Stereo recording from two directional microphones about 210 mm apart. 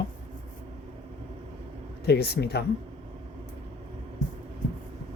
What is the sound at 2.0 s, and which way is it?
Speech, 50° left (ahead or behind).